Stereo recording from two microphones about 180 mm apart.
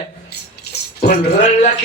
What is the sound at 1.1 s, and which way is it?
Speech, 35° left (ahead or behind).